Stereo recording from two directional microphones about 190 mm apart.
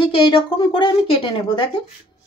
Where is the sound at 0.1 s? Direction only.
25° left (ahead or behind).